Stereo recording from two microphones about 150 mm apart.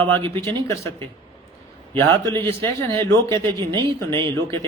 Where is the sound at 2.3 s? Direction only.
20° left (ahead or behind).